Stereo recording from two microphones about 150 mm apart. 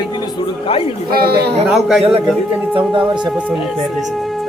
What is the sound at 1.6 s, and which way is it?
Speech, centre (ahead or behind).